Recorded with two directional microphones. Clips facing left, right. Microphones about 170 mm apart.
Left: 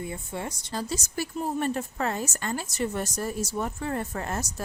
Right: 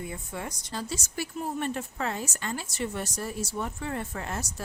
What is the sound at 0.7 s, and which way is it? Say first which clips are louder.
A woman's voice: left 4 dB; 40° left (ahead or behind).